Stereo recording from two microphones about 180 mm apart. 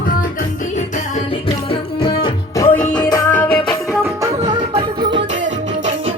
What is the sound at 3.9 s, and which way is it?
Music, 15° right (ahead or behind).